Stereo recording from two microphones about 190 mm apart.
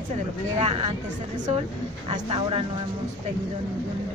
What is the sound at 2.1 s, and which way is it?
Speech, 30° right (ahead or behind).